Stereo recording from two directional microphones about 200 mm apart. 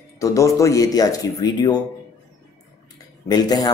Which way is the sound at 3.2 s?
20° left (ahead or behind).